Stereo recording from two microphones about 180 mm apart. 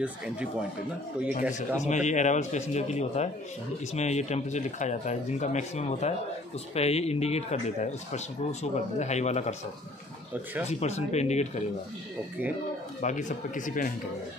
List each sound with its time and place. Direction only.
0.0 s speech: 5° right (ahead or behind)
1.8 s speech: 40° left (ahead or behind)
10.7 s speech: 40° left (ahead or behind)
13.0 s speech: 45° left (ahead or behind)